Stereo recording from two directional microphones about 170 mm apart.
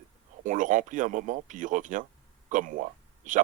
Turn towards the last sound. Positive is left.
turn(degrees=-50)  # may be behind; listen again after turning